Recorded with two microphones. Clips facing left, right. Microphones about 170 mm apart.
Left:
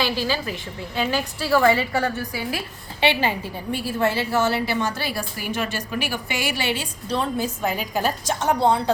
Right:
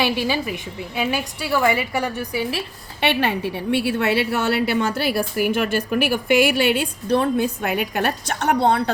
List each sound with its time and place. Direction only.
0.0 s a woman's voice: 15° right (ahead or behind)
3.1 s a woman's voice: 65° right (ahead or behind)